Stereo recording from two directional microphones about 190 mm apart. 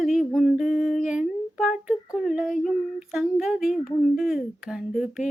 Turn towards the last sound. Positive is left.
turn(degrees=0)  # may be behind; listen again after turning